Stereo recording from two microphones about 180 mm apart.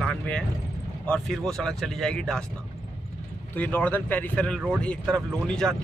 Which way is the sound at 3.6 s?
10° left (ahead or behind).